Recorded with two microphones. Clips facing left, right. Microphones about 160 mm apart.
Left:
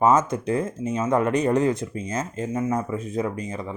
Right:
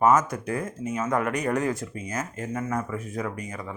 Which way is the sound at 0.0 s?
25° left (ahead or behind).